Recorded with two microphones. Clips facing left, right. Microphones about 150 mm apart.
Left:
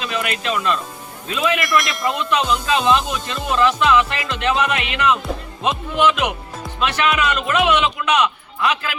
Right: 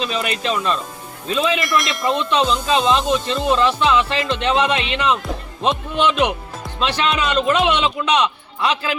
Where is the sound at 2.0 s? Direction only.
30° right (ahead or behind).